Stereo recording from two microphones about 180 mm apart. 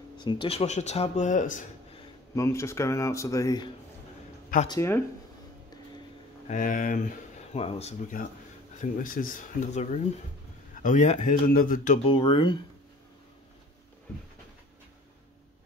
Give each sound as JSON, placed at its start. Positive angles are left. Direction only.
{"t": 0.2, "sound": "speech", "side_deg": 25}
{"t": 2.3, "sound": "speech", "side_deg": 15}
{"t": 6.4, "sound": "speech", "side_deg": 45}
{"t": 8.7, "sound": "speech", "side_deg": 50}
{"t": 12.0, "sound": "speech", "side_deg": 25}